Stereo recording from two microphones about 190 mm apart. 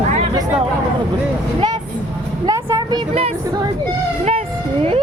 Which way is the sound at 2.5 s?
15° right (ahead or behind).